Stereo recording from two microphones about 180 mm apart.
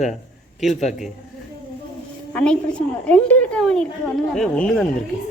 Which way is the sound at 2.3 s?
5° left (ahead or behind).